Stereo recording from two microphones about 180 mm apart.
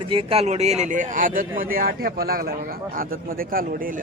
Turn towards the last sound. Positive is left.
turn(degrees=-50)  # may be behind; listen again after turning